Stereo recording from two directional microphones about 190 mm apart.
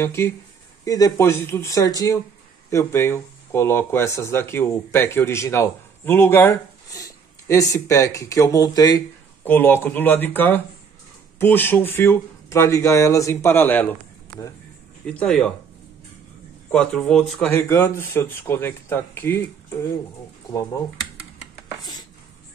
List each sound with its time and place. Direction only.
0.0 s speech: 15° left (ahead or behind)
16.7 s speech: 5° left (ahead or behind)